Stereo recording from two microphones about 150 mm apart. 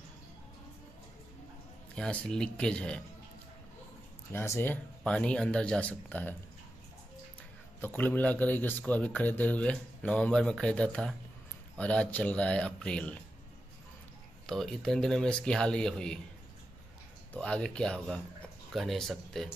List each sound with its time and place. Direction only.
2.0 s speech: 5° left (ahead or behind)
4.3 s speech: 15° left (ahead or behind)
7.8 s speech: 10° left (ahead or behind)
14.4 s speech: 5° left (ahead or behind)
17.3 s speech: 5° left (ahead or behind)